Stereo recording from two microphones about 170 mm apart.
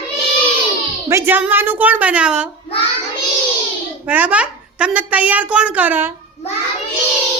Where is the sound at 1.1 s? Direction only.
15° right (ahead or behind).